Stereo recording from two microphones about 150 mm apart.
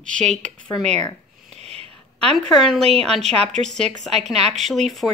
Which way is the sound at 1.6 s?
45° right (ahead or behind).